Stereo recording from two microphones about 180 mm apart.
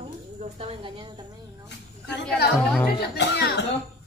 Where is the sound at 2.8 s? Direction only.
70° left (ahead or behind).